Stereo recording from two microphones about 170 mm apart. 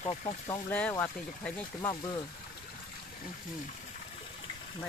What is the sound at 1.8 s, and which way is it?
Speech, 25° left (ahead or behind).